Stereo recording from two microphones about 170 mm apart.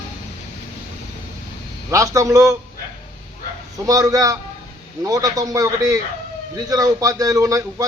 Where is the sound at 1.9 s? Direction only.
20° right (ahead or behind).